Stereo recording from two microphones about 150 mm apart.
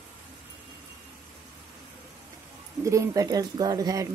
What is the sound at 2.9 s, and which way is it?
Speech, 20° right (ahead or behind).